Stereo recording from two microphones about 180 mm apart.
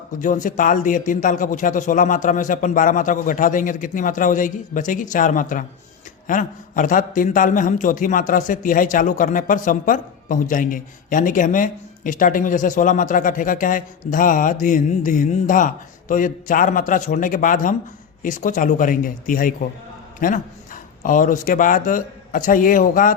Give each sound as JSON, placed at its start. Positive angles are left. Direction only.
{"t": 0.2, "sound": "a man's voice", "side_deg": 45}